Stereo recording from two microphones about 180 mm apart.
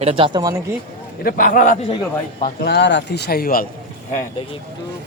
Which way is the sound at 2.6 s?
70° left (ahead or behind).